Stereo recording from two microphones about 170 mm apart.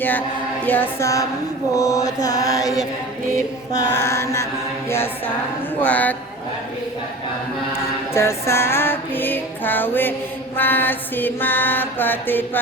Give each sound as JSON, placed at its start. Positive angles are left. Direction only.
{"t": 0.0, "sound": "mantra", "side_deg": 10}
{"t": 5.8, "sound": "mantra", "side_deg": 10}
{"t": 8.1, "sound": "music", "side_deg": 15}
{"t": 10.6, "sound": "mantra", "side_deg": 10}